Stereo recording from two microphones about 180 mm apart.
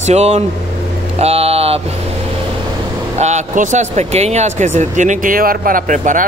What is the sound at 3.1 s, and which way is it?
Speech, 40° right (ahead or behind).